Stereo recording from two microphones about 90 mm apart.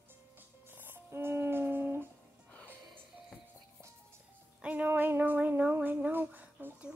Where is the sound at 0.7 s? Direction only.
25° right (ahead or behind).